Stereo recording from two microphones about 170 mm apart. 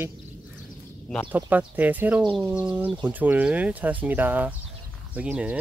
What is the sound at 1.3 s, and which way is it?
Speech, 10° right (ahead or behind).